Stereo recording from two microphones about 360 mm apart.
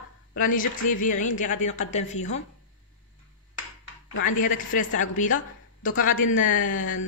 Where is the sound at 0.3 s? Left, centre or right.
Left.